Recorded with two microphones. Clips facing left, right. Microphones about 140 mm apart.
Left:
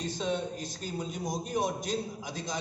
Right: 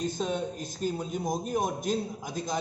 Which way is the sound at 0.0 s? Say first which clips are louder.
Right 2 dB; 45° right (ahead or behind).